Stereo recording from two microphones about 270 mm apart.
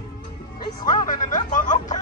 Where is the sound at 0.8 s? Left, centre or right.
Left.